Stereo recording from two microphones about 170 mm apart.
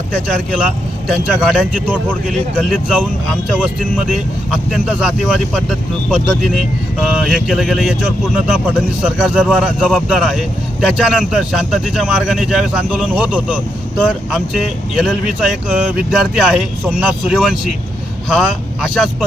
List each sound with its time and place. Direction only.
0.3 s speech: 5° right (ahead or behind)
4.1 s speech: 5° right (ahead or behind)